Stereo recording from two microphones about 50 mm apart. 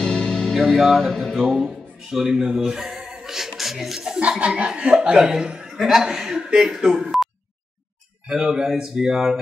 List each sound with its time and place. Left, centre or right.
0.0 s music: centre
2.0 s speech: centre
3.3 s a sound: centre
4.6 s speech: right
5.8 s speech: centre
8.3 s speech: centre